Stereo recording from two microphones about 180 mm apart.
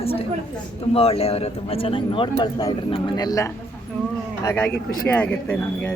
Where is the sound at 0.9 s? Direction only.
35° left (ahead or behind).